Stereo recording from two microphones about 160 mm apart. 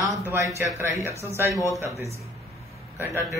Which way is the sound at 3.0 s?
15° right (ahead or behind).